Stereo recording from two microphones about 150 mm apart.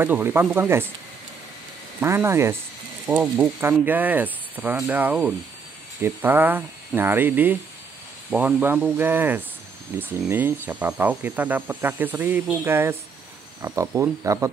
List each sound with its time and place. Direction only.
0.0 s speech: 15° right (ahead or behind)
2.0 s speech: 15° right (ahead or behind)